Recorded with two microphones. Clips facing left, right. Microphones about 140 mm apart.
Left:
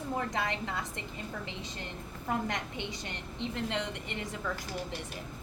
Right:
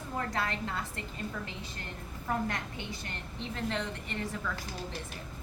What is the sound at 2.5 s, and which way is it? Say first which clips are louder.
A woman's voice: left 1 dB; 20° left (ahead or behind).